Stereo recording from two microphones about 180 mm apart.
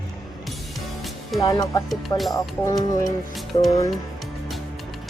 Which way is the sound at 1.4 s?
20° left (ahead or behind).